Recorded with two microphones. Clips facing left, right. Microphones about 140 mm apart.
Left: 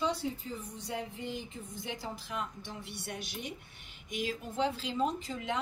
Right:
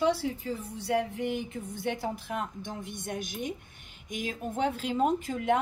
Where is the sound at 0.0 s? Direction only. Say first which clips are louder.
Right 6 dB; 70° right (ahead or behind).